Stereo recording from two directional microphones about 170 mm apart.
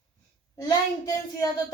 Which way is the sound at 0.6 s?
20° left (ahead or behind).